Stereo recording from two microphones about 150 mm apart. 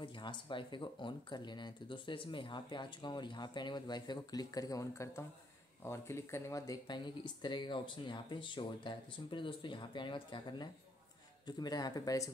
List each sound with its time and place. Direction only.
0.0 s speech: 30° left (ahead or behind)